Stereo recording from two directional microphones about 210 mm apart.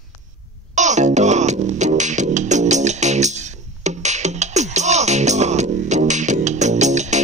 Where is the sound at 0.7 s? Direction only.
35° right (ahead or behind).